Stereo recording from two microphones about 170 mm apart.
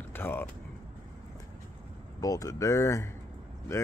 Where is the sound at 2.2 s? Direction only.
20° left (ahead or behind).